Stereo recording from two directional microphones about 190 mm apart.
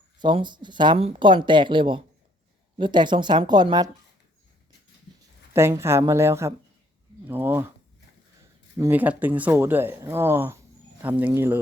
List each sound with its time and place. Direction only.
0.2 s speech: 25° right (ahead or behind)
5.5 s speech: 15° right (ahead or behind)
8.8 s speech: 10° right (ahead or behind)